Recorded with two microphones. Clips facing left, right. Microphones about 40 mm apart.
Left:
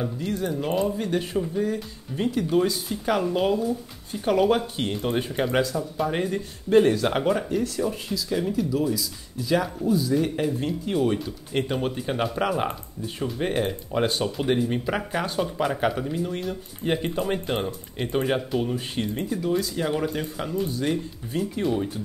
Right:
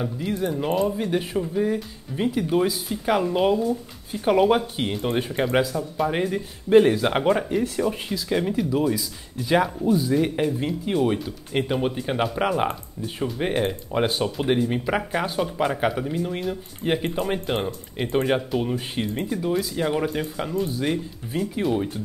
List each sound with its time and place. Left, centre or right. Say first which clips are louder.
0.0 s speech: right 2 dB; centre